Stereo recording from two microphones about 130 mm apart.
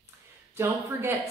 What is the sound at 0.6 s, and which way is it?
Speech, 20° right (ahead or behind).